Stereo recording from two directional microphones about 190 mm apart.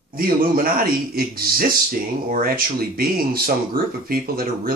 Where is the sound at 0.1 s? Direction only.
50° right (ahead or behind).